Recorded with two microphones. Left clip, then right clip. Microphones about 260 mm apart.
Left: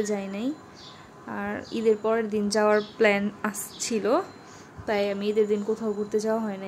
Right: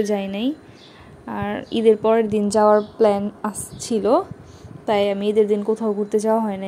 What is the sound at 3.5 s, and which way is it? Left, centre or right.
A woman's voice, centre.